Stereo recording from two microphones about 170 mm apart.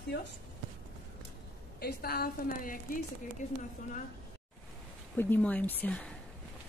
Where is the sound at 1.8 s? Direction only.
65° left (ahead or behind).